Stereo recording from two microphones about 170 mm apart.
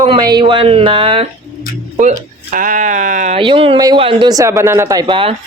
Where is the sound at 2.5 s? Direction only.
50° right (ahead or behind).